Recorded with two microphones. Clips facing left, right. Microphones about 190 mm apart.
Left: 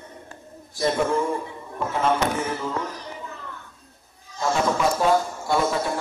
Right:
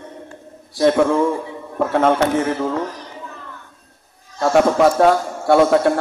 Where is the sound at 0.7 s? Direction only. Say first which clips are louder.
Right 8 dB; 85° right.